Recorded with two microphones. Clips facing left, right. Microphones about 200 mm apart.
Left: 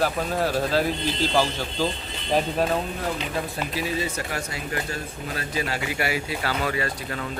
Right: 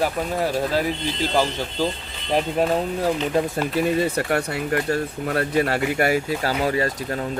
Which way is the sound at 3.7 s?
55° right (ahead or behind).